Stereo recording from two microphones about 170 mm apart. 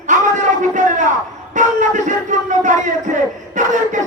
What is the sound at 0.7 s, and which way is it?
A man's voice, 50° right (ahead or behind).